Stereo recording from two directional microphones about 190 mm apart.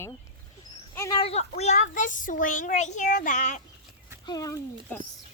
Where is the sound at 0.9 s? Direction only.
15° left (ahead or behind).